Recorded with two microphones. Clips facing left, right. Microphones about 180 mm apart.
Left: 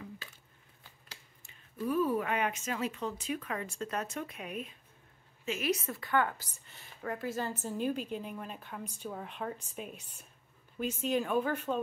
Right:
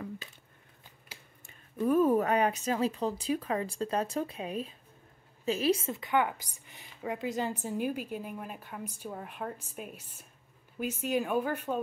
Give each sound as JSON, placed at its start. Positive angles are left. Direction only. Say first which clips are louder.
{"t": 1.4, "sound": "a woman's voice", "louder": "right 6 dB", "side_deg": -50}